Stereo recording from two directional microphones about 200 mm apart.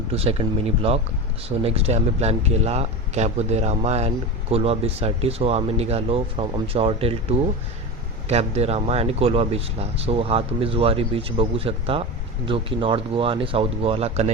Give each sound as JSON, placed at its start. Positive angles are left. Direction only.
{"t": 0.1, "sound": "speech", "side_deg": -30}